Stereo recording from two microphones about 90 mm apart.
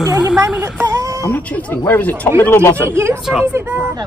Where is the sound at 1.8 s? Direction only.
20° left (ahead or behind).